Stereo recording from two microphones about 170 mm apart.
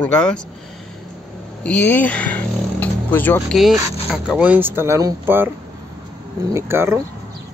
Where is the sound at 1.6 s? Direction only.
10° left (ahead or behind).